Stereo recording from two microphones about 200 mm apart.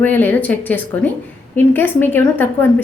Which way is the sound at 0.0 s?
10° left (ahead or behind).